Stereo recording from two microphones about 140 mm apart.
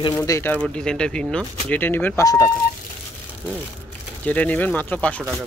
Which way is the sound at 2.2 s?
25° left (ahead or behind).